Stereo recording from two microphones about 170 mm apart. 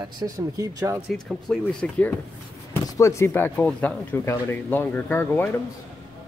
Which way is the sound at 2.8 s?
20° left (ahead or behind).